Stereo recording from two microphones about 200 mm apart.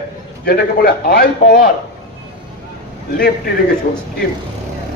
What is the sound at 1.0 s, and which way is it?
Speech, 50° left (ahead or behind).